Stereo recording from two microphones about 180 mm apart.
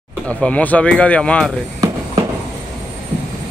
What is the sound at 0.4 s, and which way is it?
Speech, 5° left (ahead or behind).